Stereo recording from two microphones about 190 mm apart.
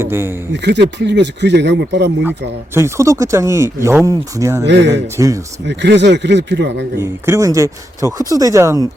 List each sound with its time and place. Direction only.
0.0 s speech: 10° right (ahead or behind)
0.5 s speech: 65° right (ahead or behind)
2.7 s speech: 15° right (ahead or behind)
4.6 s speech: 65° right (ahead or behind)
5.1 s speech: 15° right (ahead or behind)
5.6 s speech: 65° right (ahead or behind)
6.9 s speech: 15° right (ahead or behind)